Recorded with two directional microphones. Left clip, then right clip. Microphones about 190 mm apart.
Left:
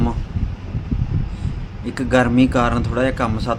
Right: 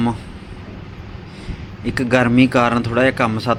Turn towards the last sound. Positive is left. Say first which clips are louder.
# right 4 dB
turn(degrees=-10)  # may be behind; listen again after turning